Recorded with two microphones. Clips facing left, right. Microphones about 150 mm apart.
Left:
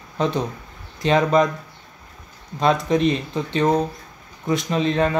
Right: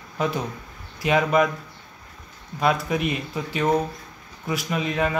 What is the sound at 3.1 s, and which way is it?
Speech, 30° left (ahead or behind).